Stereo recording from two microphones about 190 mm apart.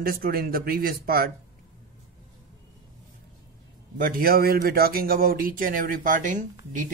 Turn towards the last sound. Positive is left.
turn(degrees=-40)  # may be behind; listen again after turning